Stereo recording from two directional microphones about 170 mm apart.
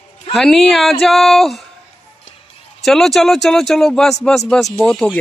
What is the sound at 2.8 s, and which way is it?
A man's voice, centre (ahead or behind).